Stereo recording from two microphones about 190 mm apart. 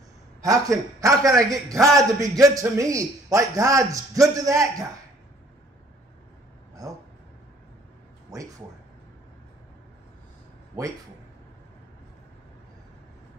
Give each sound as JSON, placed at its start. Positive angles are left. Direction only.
{"t": 0.4, "sound": "a man's voice", "side_deg": -15}
{"t": 6.8, "sound": "a sound", "side_deg": -15}
{"t": 8.3, "sound": "speech", "side_deg": -15}